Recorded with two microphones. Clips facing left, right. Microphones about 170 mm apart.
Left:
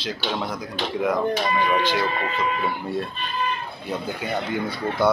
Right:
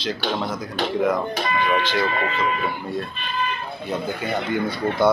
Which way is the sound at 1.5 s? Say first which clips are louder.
Right 4 dB; 35° left (ahead or behind).